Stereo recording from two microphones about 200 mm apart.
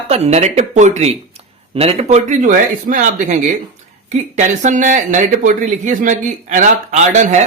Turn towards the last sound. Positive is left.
turn(degrees=-35)  # may be behind; listen again after turning